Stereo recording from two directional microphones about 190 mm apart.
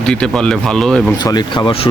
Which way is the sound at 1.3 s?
20° left (ahead or behind).